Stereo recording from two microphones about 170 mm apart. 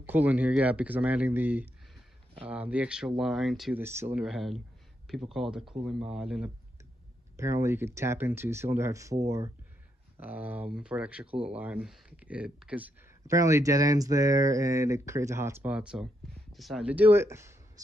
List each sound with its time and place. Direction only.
0.0 s speech: 10° right (ahead or behind)
3.8 s speech: 15° right (ahead or behind)
4.2 s speech: centre (ahead or behind)
7.3 s speech: 15° right (ahead or behind)
10.2 s speech: 10° right (ahead or behind)